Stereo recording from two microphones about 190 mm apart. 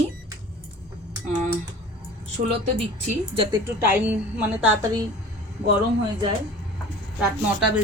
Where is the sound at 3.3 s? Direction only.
30° right (ahead or behind).